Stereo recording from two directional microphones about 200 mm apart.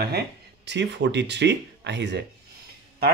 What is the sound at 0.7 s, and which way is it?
Speech, 60° right (ahead or behind).